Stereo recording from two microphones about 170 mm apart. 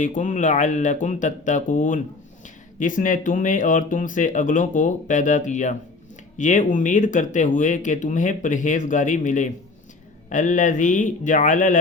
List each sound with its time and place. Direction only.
0.0 s speech: 45° left (ahead or behind)